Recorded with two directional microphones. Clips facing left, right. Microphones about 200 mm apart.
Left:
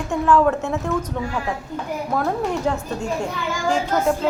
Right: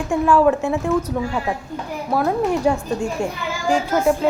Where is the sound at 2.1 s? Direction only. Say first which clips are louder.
Right 4 dB; 10° right (ahead or behind).